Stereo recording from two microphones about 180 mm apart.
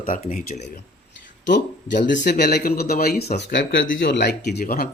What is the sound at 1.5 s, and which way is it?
Speech, 75° left (ahead or behind).